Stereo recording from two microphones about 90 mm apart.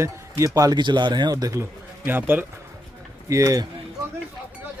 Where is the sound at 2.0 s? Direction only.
25° right (ahead or behind).